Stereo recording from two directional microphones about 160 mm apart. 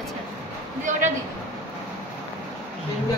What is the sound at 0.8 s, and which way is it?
Speech, 50° right (ahead or behind).